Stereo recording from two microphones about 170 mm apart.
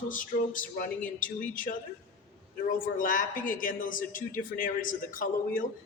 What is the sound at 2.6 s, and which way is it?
A man's voice, 55° left (ahead or behind).